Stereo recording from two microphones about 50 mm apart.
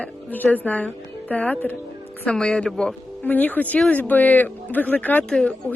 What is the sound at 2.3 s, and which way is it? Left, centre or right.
Speech, centre.